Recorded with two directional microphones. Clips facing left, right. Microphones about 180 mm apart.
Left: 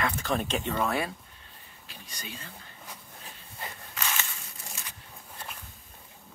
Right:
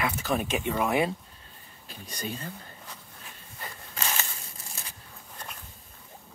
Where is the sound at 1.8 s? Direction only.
45° right (ahead or behind).